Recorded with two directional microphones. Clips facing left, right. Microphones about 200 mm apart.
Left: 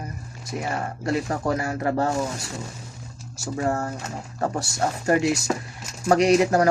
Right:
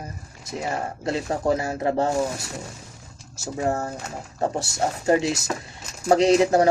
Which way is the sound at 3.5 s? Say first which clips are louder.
Even; 20° right (ahead or behind).